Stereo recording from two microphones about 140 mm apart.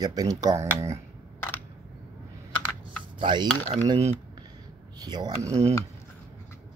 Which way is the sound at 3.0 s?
35° right (ahead or behind).